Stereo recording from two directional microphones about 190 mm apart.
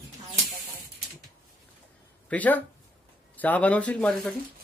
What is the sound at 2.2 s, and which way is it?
Speech, 10° left (ahead or behind).